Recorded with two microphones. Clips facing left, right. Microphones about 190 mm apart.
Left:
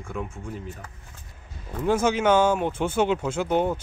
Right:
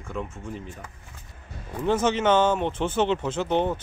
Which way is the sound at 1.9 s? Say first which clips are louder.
Left 1 dB; 10° left (ahead or behind).